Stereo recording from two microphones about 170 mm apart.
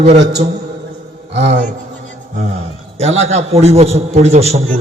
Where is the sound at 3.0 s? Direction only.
40° right (ahead or behind).